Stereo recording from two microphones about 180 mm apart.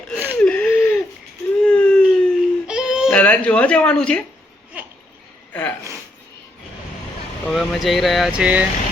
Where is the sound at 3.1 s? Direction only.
10° left (ahead or behind).